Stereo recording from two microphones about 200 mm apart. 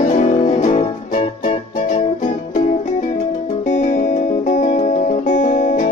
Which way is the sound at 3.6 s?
35° left (ahead or behind).